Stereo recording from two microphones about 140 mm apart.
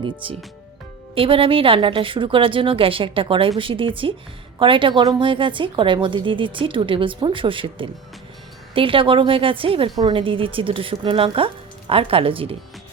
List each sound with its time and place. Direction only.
0.0 s a woman's voice: 40° right (ahead or behind)